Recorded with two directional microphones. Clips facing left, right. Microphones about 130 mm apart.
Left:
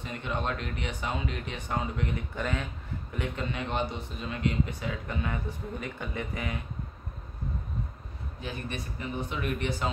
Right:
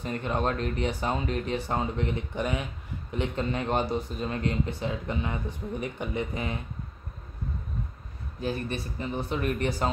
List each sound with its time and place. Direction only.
0.0 s speech: 40° right (ahead or behind); by 3.3 s 20° right (ahead or behind)
3.3 s speech: 40° right (ahead or behind)
8.4 s speech: 35° right (ahead or behind)